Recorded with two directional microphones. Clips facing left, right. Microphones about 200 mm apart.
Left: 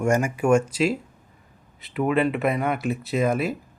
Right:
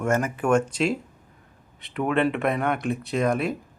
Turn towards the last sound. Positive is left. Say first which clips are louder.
# left 1 dB
turn(degrees=5)  # may be behind; listen again after turning